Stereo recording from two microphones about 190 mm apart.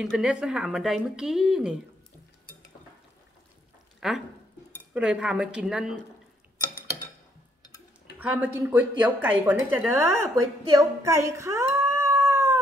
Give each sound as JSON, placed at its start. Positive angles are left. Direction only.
{"t": 0.0, "sound": "speech", "side_deg": -5}
{"t": 4.0, "sound": "speech", "side_deg": 0}
{"t": 8.2, "sound": "a woman's voice", "side_deg": -10}